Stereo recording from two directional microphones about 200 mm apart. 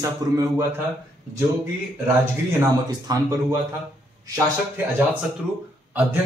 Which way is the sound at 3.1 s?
20° right (ahead or behind).